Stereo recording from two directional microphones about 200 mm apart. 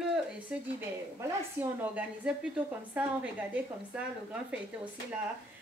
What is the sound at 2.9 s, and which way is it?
A woman's voice, 5° right (ahead or behind).